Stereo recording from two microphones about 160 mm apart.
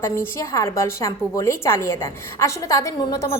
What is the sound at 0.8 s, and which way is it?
A woman's voice, 15° left (ahead or behind).